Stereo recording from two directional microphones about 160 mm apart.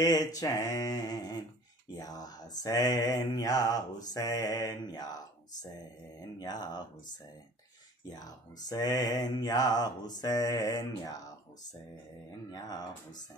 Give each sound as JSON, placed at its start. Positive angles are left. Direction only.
{"t": 0.0, "sound": "speech", "side_deg": 20}
{"t": 8.1, "sound": "speech", "side_deg": 25}
{"t": 12.4, "sound": "speech", "side_deg": 25}